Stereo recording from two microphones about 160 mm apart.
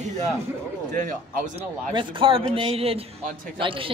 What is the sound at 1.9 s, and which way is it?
A woman's voice, 30° right (ahead or behind).